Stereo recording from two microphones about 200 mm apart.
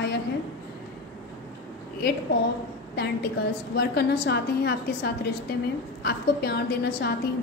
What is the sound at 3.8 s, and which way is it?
A woman's voice, 55° left (ahead or behind).